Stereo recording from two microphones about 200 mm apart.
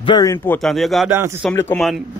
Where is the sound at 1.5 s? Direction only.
10° left (ahead or behind).